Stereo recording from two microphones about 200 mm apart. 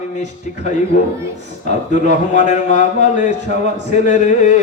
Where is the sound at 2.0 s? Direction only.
35° left (ahead or behind).